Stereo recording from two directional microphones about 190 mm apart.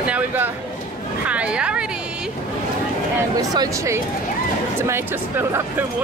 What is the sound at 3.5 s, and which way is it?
Speech, 20° right (ahead or behind).